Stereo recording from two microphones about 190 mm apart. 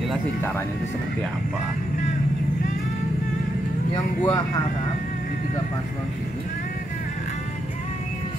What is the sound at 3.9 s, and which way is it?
Speech, 20° left (ahead or behind).